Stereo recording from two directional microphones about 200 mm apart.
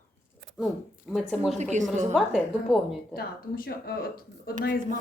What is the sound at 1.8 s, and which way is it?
Speech, 35° right (ahead or behind).